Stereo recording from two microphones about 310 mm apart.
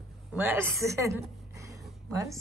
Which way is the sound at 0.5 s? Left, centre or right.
Centre.